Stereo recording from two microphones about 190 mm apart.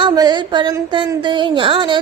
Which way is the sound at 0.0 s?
20° right (ahead or behind).